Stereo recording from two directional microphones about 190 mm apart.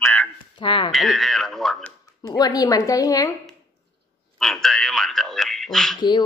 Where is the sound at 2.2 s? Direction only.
20° left (ahead or behind).